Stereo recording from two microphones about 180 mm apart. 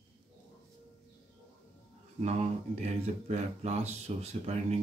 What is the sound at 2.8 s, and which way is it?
Speech, 40° right (ahead or behind).